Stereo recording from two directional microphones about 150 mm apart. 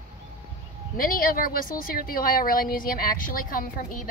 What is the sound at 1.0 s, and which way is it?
A woman's voice, 70° left (ahead or behind).